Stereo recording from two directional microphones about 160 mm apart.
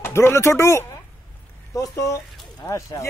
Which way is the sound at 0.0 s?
15° left (ahead or behind).